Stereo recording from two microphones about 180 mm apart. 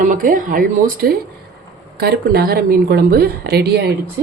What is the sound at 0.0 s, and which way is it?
Speech, 45° right (ahead or behind).